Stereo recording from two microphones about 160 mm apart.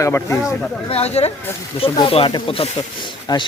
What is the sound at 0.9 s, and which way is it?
Speech, 40° left (ahead or behind).